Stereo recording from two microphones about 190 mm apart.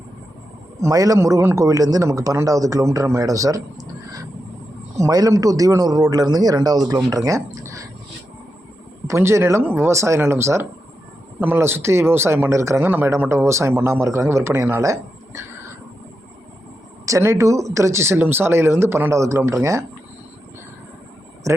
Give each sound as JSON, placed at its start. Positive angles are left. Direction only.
{"t": 0.8, "sound": "a man's voice", "side_deg": -20}
{"t": 9.0, "sound": "speech", "side_deg": -15}
{"t": 17.1, "sound": "speech", "side_deg": -15}
{"t": 21.5, "sound": "speech", "side_deg": -15}